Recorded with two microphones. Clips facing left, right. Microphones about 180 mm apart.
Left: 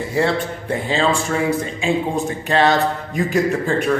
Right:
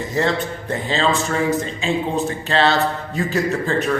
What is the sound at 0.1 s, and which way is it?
A man's voice, 10° left (ahead or behind).